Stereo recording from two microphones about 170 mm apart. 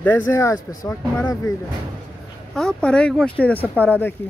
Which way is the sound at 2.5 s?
5° left (ahead or behind).